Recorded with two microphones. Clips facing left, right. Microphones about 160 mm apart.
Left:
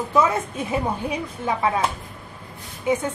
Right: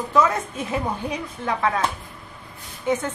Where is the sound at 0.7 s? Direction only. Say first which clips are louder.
Left 1 dB; 10° left (ahead or behind).